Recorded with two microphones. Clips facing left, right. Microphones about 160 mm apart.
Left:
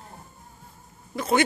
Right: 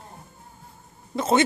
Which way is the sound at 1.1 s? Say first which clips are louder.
Right 2 dB; 25° right (ahead or behind).